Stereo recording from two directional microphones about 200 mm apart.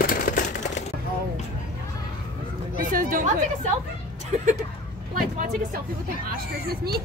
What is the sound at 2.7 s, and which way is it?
Chatter, 45° right (ahead or behind).